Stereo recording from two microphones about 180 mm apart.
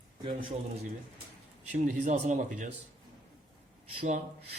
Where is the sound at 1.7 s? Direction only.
40° right (ahead or behind).